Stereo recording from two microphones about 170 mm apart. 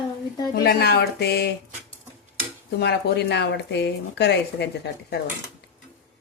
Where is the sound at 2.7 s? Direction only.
75° left (ahead or behind).